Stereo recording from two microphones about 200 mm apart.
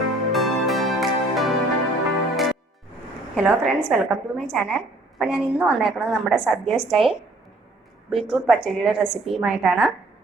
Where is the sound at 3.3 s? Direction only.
Centre (ahead or behind).